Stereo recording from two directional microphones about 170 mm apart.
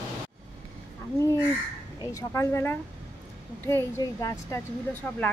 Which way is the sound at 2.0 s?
20° left (ahead or behind).